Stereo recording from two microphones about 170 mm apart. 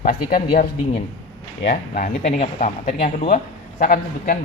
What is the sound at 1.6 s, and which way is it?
Speech, 90° left.